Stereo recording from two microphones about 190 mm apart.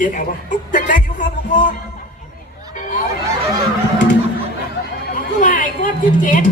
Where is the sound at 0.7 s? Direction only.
45° left (ahead or behind).